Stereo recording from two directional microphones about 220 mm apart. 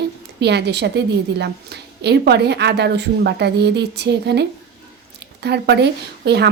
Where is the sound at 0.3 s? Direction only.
50° right (ahead or behind).